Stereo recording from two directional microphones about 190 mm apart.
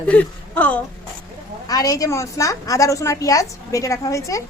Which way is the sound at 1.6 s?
20° left (ahead or behind).